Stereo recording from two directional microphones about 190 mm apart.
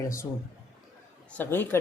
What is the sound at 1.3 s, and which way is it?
Speech, 10° left (ahead or behind).